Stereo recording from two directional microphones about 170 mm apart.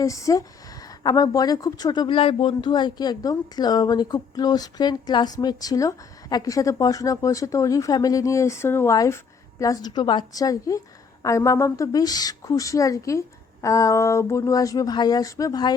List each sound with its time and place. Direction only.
0.0 s a woman's voice: 20° left (ahead or behind)